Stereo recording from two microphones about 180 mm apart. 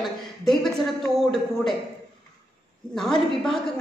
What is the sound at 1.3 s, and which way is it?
Speech, centre (ahead or behind).